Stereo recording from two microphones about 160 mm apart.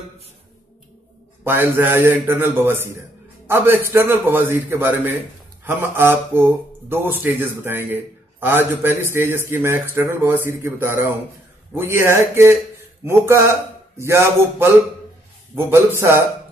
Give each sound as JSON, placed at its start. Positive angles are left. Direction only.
{"t": 1.4, "sound": "speech", "side_deg": -15}